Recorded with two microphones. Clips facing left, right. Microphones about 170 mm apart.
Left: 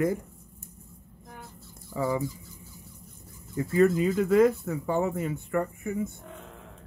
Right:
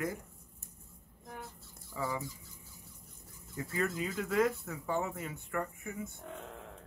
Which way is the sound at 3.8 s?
30° left (ahead or behind).